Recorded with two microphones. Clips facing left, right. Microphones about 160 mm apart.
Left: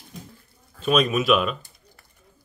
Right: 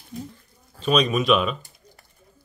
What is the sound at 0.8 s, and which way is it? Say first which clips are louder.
Speech: even; 5° left (ahead or behind).